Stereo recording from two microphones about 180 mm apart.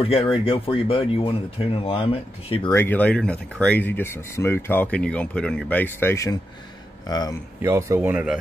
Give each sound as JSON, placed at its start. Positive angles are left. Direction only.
{"t": 0.0, "sound": "speech", "side_deg": 30}
{"t": 2.7, "sound": "speech", "side_deg": 10}
{"t": 7.6, "sound": "speech", "side_deg": -15}